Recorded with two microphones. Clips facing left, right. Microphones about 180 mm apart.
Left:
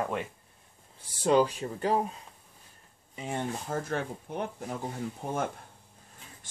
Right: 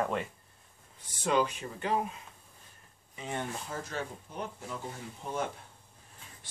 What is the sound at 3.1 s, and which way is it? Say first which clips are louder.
Speech: left 3 dB; 20° left (ahead or behind).